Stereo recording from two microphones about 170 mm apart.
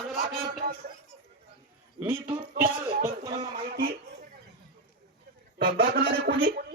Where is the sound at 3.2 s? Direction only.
25° right (ahead or behind).